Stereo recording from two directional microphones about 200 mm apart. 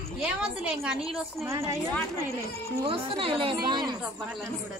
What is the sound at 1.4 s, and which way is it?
Speech, 15° right (ahead or behind).